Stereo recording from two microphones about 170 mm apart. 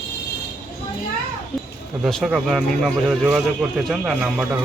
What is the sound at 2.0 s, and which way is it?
Speech, centre (ahead or behind).